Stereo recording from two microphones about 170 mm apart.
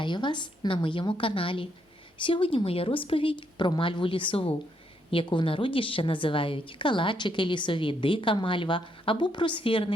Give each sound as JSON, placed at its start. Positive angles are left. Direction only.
{"t": 0.0, "sound": "a woman's voice", "side_deg": 25}